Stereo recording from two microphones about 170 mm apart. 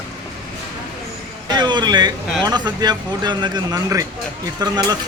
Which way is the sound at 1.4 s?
25° right (ahead or behind).